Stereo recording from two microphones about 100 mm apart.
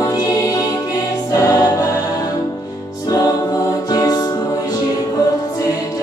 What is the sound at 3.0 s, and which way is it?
Music, 35° left (ahead or behind).